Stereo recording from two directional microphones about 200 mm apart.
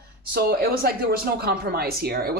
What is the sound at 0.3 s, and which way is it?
Speech, 50° right (ahead or behind).